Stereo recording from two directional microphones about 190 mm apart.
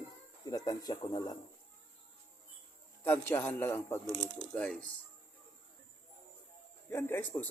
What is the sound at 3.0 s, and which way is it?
Speech, 10° left (ahead or behind).